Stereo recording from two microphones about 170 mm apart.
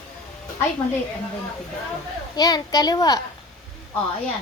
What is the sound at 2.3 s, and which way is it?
Speech, 25° left (ahead or behind).